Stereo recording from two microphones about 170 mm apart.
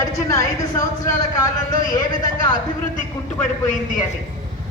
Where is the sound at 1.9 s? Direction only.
25° left (ahead or behind).